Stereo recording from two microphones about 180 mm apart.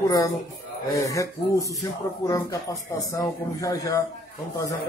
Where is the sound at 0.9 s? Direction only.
15° left (ahead or behind).